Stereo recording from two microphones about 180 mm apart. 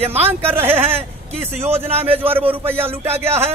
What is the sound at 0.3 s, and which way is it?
A man's voice, 10° right (ahead or behind).